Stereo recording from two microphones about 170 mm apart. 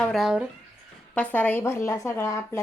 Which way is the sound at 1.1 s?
10° left (ahead or behind).